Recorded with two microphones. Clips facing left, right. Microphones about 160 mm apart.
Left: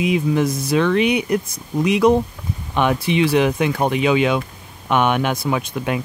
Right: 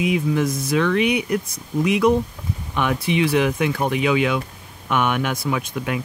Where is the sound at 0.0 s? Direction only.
25° left (ahead or behind).